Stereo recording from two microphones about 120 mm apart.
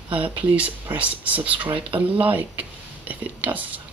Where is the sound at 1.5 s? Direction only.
45° right (ahead or behind).